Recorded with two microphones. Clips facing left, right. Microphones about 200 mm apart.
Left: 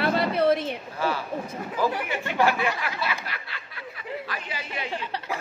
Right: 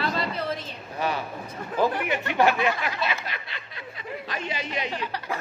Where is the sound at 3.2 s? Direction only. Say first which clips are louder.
Right 1 dB; 20° right (ahead or behind).